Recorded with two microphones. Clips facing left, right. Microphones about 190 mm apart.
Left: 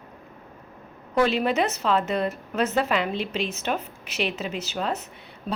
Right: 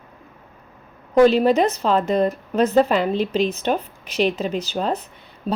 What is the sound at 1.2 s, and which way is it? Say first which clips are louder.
Speech: right 8 dB; 35° right (ahead or behind).